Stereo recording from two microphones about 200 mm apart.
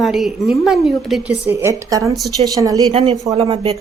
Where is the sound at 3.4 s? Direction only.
30° right (ahead or behind).